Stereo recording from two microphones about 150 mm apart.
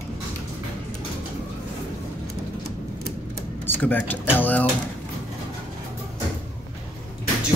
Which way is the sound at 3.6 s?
10° left (ahead or behind).